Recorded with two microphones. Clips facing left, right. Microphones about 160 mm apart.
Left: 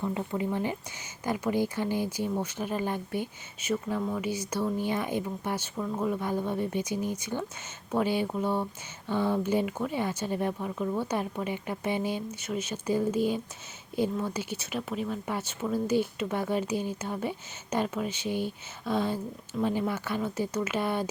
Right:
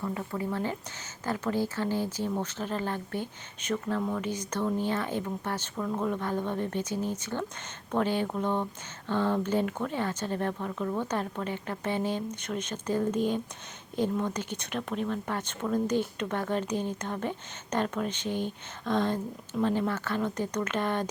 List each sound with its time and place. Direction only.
0.0 s speech: 20° left (ahead or behind)